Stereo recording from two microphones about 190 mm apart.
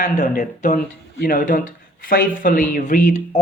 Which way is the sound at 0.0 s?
40° left (ahead or behind).